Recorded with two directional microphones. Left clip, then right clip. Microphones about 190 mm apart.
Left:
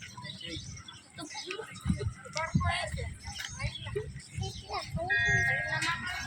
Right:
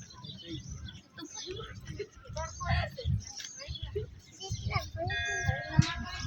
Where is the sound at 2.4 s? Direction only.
35° right (ahead or behind).